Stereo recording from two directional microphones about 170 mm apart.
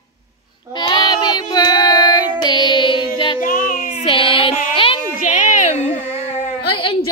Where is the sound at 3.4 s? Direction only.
50° left (ahead or behind).